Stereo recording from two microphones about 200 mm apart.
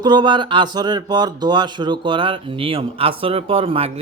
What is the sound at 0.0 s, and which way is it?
Speech, 20° right (ahead or behind).